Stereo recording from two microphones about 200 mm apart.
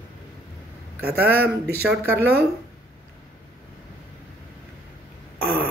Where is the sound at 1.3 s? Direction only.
50° right (ahead or behind).